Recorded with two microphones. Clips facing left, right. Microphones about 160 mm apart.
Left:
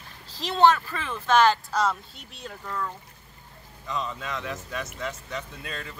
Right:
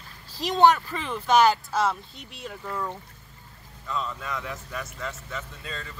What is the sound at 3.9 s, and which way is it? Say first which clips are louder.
A man's voice: even; 20° left (ahead or behind).